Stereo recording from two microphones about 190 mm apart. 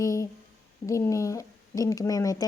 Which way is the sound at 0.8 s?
15° left (ahead or behind).